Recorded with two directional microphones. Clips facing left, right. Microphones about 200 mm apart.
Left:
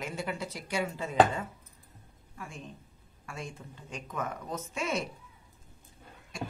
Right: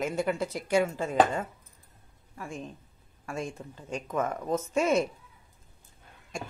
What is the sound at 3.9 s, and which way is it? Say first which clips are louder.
Speech: right 7 dB; 45° right (ahead or behind).